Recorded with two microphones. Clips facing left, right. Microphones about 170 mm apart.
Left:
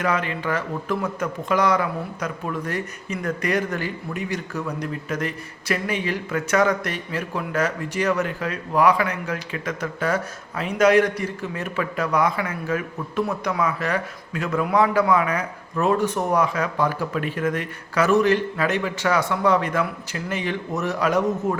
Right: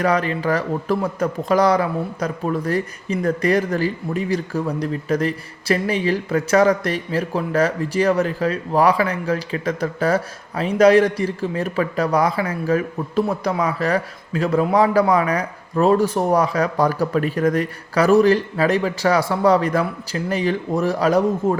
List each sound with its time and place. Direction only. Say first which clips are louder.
0.0 s speech: right 5 dB; 35° right (ahead or behind)